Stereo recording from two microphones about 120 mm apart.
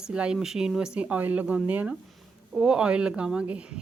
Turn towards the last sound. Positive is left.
turn(degrees=-10)  # may be behind; listen again after turning